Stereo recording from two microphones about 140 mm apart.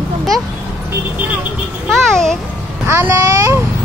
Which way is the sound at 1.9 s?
5° left (ahead or behind).